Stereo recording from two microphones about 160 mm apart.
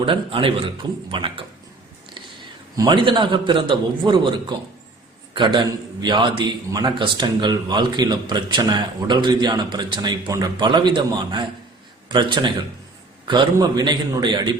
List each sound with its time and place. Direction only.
0.0 s a man's voice: 35° right (ahead or behind)
2.7 s a man's voice: 30° right (ahead or behind)